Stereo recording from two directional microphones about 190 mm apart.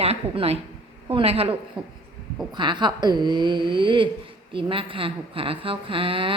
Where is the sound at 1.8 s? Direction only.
5° right (ahead or behind).